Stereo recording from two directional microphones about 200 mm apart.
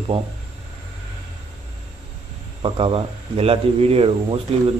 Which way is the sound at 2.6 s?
30° right (ahead or behind).